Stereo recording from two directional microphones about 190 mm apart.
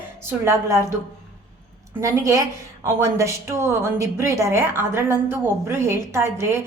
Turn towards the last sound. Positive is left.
turn(degrees=-15)  # may be behind; listen again after turning